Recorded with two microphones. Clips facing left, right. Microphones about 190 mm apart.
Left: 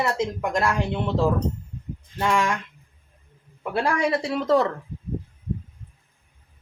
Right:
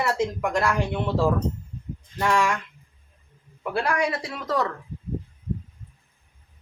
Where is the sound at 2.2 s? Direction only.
20° left (ahead or behind).